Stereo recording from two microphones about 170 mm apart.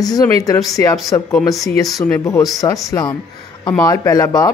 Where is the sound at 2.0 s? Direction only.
20° left (ahead or behind).